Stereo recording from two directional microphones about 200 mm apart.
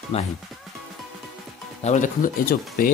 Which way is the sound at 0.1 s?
30° left (ahead or behind).